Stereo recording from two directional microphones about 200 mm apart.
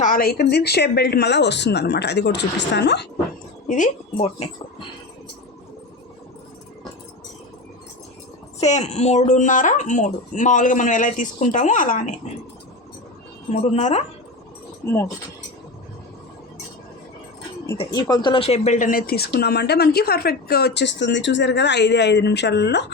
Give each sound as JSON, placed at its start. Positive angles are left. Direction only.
{"t": 0.0, "sound": "speech", "side_deg": 45}
{"t": 3.7, "sound": "speech", "side_deg": 35}
{"t": 8.6, "sound": "speech", "side_deg": 35}
{"t": 13.5, "sound": "speech", "side_deg": 35}
{"t": 14.8, "sound": "speech", "side_deg": 15}
{"t": 17.7, "sound": "speech", "side_deg": 20}